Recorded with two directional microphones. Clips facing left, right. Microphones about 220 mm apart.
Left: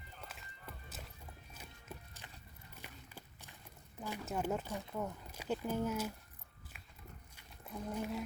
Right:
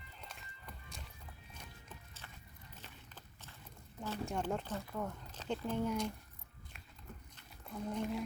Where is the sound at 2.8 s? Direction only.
15° left (ahead or behind).